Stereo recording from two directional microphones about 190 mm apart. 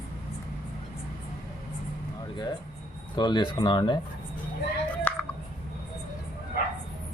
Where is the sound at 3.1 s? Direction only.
25° left (ahead or behind).